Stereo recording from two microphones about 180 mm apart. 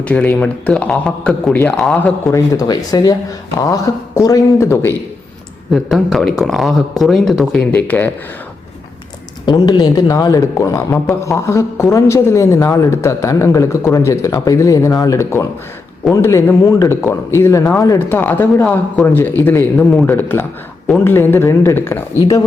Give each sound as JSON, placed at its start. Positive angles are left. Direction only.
{"t": 0.0, "sound": "speech", "side_deg": 10}
{"t": 5.7, "sound": "speech", "side_deg": 0}
{"t": 9.5, "sound": "speech", "side_deg": 25}